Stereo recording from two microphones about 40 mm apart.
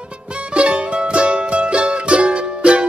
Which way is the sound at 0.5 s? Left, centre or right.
Right.